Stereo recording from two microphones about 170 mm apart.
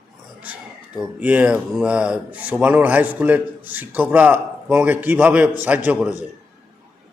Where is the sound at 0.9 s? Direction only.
10° right (ahead or behind).